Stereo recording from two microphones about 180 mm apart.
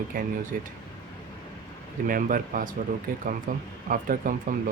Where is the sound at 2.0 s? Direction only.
50° right (ahead or behind).